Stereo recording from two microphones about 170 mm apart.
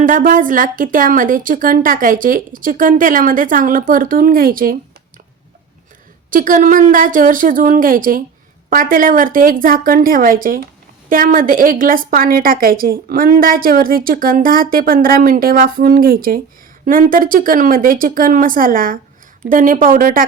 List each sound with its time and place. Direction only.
0.0 s a woman's voice: 50° right (ahead or behind)
6.3 s a woman's voice: 50° right (ahead or behind)